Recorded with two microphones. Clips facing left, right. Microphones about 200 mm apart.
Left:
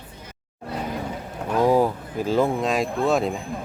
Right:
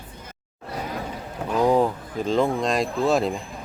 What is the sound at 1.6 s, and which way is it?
Speech, 5° left (ahead or behind).